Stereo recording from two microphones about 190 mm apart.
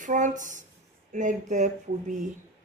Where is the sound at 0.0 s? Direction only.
40° right (ahead or behind).